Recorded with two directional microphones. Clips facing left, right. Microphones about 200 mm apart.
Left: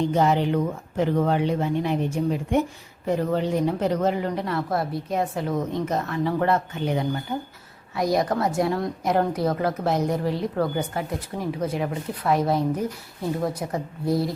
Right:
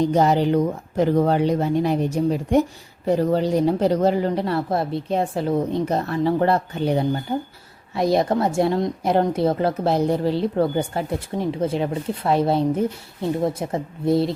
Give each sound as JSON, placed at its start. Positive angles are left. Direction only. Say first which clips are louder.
{"t": 0.0, "sound": "a woman's voice", "louder": "right 3 dB", "side_deg": -40}